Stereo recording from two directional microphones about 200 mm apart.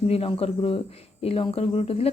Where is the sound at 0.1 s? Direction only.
30° left (ahead or behind).